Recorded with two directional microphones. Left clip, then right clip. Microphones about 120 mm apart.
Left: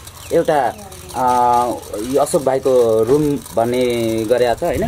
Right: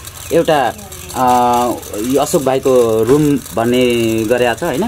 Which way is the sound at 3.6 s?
30° right (ahead or behind).